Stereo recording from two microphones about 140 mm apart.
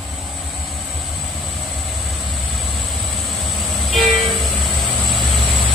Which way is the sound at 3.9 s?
Centre (ahead or behind).